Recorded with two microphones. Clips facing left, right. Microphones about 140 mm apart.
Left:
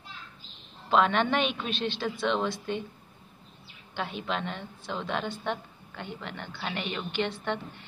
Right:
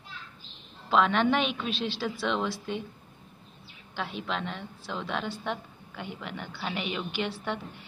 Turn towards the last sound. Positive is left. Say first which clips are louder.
# left 1 dB
turn(degrees=-5)  # may be behind; listen again after turning